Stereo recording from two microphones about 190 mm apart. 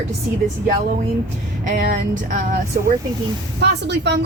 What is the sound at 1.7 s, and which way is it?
Speech, 45° right (ahead or behind).